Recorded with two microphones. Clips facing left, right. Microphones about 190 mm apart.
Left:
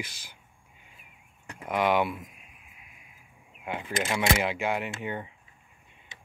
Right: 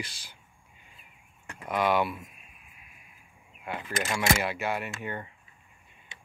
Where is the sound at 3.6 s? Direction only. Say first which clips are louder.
Left 2 dB; 10° left (ahead or behind).